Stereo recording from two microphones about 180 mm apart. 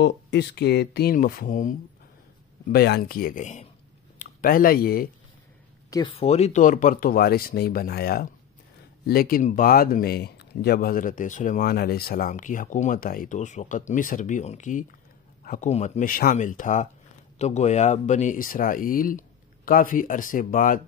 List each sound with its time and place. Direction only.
0.0 s speech: 70° left (ahead or behind); by 1.8 s 45° left (ahead or behind)
2.7 s speech: 65° left (ahead or behind)
5.9 s speech: 20° left (ahead or behind)
6.1 s speech: 35° left (ahead or behind); by 15.7 s 50° left (ahead or behind)
15.7 s speech: 40° left (ahead or behind)